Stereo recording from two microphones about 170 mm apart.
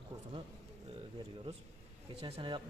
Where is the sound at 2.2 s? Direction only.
35° right (ahead or behind).